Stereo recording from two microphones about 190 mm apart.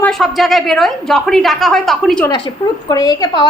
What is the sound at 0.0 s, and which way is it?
A woman's voice, centre (ahead or behind).